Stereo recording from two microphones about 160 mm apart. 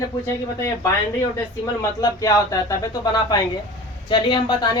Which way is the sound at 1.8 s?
20° left (ahead or behind).